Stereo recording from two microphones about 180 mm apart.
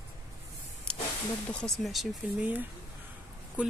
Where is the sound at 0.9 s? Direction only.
5° left (ahead or behind).